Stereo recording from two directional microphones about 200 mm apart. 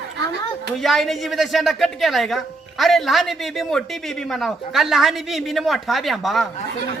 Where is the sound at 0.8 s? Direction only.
Centre (ahead or behind).